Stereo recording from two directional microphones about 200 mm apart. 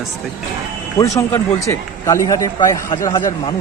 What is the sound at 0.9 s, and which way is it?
A man's voice, 15° left (ahead or behind).